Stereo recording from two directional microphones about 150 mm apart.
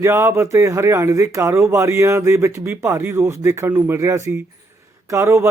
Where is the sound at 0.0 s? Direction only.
20° right (ahead or behind).